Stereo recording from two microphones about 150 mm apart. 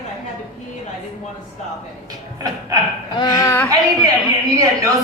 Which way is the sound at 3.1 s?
25° left (ahead or behind).